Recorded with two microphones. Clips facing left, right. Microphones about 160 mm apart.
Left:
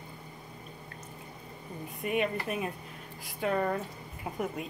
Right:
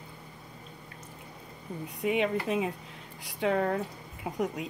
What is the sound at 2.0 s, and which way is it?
Speech, 90° right.